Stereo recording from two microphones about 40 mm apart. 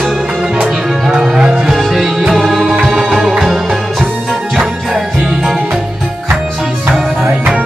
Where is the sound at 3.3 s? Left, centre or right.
Centre.